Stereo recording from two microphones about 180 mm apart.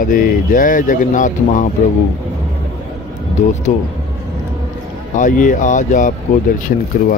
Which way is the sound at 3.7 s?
45° left (ahead or behind).